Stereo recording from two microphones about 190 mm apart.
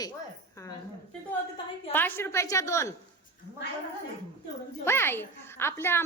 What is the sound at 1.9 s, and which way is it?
A woman's voice, 10° left (ahead or behind).